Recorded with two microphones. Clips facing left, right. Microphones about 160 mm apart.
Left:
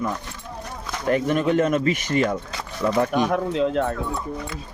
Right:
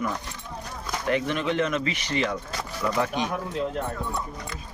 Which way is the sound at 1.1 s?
45° left (ahead or behind).